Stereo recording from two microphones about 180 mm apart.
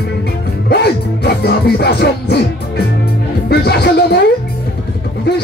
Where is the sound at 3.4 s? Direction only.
65° left (ahead or behind).